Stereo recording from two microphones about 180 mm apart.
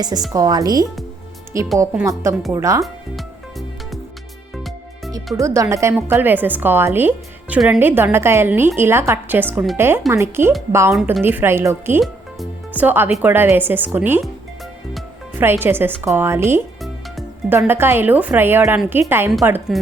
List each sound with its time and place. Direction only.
0.0 s a woman's voice: 20° right (ahead or behind)
4.5 s music: centre (ahead or behind)
5.4 s a woman's voice: 15° right (ahead or behind)
10.9 s a woman's voice: centre (ahead or behind)
11.2 s a woman's voice: 10° right (ahead or behind)
12.0 s music: 5° right (ahead or behind)
13.2 s a woman's voice: 10° right (ahead or behind)
15.4 s a woman's voice: 10° right (ahead or behind)